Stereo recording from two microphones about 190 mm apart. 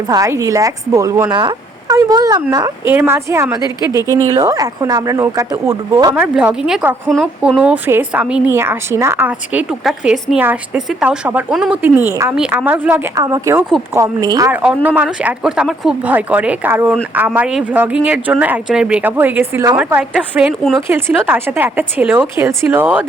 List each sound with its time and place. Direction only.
0.1 s speech: 15° right (ahead or behind)
6.1 s speech: 5° right (ahead or behind)
15.2 s speech: 5° right (ahead or behind)